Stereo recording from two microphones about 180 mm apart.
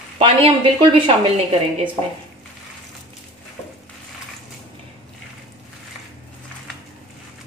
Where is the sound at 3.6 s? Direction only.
15° left (ahead or behind).